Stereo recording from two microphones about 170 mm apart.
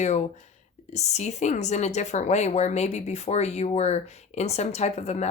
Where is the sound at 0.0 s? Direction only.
45° left (ahead or behind).